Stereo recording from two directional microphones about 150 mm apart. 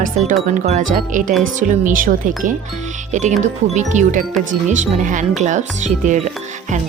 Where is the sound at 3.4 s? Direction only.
55° right (ahead or behind).